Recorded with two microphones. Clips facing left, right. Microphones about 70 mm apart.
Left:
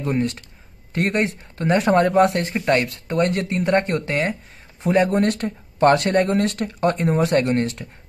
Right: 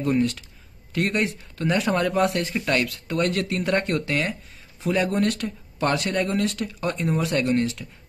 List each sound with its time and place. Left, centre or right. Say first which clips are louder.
0.1 s speech: even; left
2.6 s speech: left 4 dB; left